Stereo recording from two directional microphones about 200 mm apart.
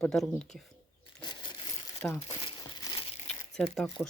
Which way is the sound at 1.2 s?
20° left (ahead or behind).